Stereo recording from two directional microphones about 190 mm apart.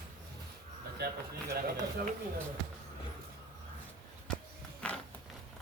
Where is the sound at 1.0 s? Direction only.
60° right (ahead or behind).